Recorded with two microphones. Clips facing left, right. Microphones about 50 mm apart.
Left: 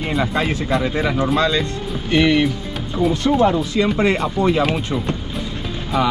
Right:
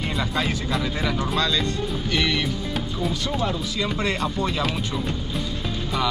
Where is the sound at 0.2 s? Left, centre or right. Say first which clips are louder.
Left 4 dB; left.